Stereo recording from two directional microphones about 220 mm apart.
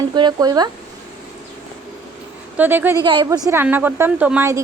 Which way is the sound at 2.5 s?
10° right (ahead or behind).